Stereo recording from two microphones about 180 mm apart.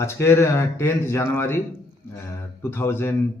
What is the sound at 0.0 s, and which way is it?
A man's voice, 15° left (ahead or behind).